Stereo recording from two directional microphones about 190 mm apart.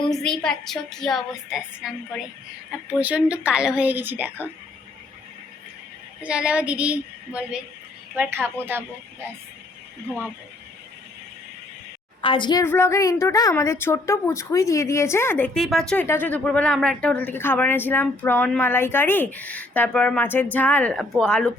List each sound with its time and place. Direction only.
0.1 s a woman's voice: 5° left (ahead or behind)
6.2 s a woman's voice: 5° right (ahead or behind)
12.2 s a woman's voice: 25° left (ahead or behind)
12.6 s speech: 10° left (ahead or behind)
15.5 s a woman's voice: centre (ahead or behind)